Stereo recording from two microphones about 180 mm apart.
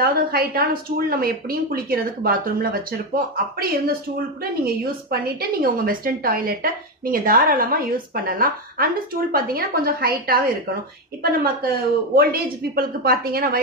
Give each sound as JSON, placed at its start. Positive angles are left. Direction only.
{"t": 0.0, "sound": "a woman's voice", "side_deg": -55}
{"t": 11.6, "sound": "a woman's voice", "side_deg": -55}